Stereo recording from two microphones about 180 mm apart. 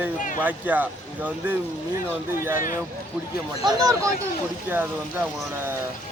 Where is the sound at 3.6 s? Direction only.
20° right (ahead or behind).